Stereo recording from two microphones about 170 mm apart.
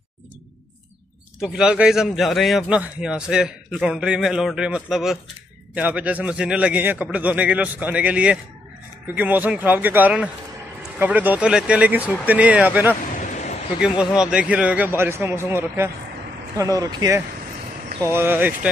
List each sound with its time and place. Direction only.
1.4 s a man's voice: 5° right (ahead or behind)
13.2 s a sound: 45° left (ahead or behind)
13.7 s a man's voice: 5° right (ahead or behind)